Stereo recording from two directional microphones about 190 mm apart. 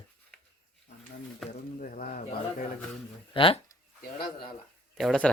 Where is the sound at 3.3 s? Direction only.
25° left (ahead or behind).